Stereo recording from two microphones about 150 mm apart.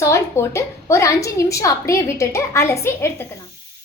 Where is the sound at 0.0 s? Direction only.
20° left (ahead or behind).